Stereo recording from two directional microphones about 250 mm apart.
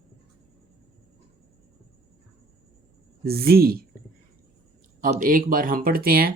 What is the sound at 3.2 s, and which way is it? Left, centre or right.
Speech, right.